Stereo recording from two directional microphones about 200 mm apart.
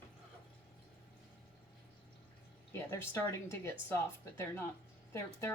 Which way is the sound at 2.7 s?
10° left (ahead or behind).